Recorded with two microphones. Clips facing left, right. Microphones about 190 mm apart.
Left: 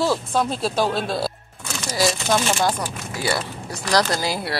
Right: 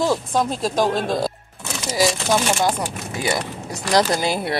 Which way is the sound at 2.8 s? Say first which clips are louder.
Right 1 dB; 20° right (ahead or behind).